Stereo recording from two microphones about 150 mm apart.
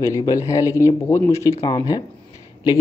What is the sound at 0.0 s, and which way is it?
Speech, 20° left (ahead or behind).